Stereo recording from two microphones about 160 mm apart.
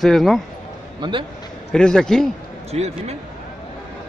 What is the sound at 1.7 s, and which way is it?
Speech, 5° left (ahead or behind).